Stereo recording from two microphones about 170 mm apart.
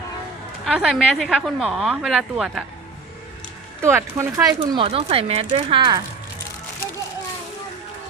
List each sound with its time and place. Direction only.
0.6 s a woman's voice: 5° right (ahead or behind)
3.8 s speech: 15° right (ahead or behind)
4.8 s speech: 35° right (ahead or behind)